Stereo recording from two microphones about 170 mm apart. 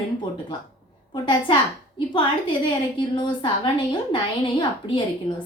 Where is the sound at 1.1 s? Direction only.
30° left (ahead or behind).